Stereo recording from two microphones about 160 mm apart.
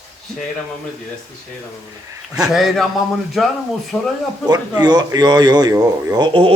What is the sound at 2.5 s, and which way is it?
Speech, centre (ahead or behind).